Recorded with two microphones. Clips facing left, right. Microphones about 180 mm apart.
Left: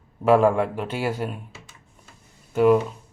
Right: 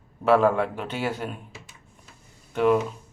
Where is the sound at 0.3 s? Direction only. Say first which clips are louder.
Left 2 dB; 10° left (ahead or behind).